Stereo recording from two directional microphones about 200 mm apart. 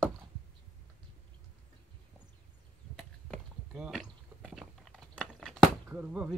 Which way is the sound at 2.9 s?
Centre (ahead or behind).